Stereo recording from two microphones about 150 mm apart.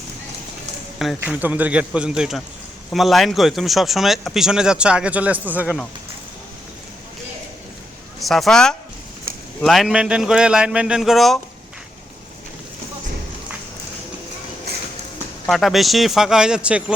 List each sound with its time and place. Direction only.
0.9 s speech: 5° right (ahead or behind)
5.6 s speech: centre (ahead or behind)
8.2 s speech: centre (ahead or behind)
14.7 s a sound: 90° right
15.4 s speech: centre (ahead or behind)